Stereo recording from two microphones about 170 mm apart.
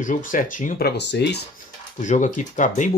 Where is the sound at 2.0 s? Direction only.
45° left (ahead or behind).